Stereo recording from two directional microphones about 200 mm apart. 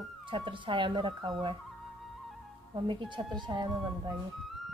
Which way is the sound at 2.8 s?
25° right (ahead or behind).